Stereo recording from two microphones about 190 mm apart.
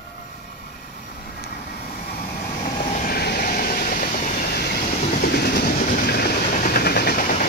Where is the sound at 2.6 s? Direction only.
40° left (ahead or behind).